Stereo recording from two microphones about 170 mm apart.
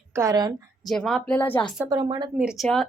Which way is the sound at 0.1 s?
20° right (ahead or behind).